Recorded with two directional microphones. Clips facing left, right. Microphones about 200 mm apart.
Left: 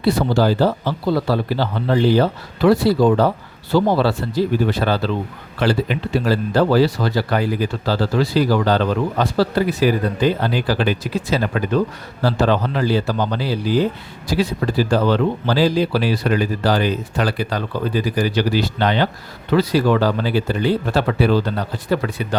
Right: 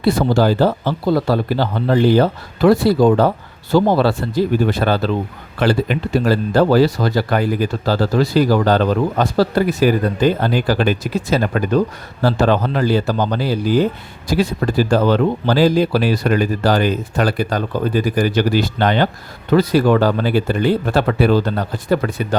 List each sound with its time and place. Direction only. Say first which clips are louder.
0.0 s speech: right 2 dB; 45° right (ahead or behind)